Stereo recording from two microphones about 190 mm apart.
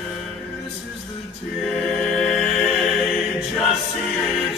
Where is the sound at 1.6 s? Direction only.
Centre (ahead or behind).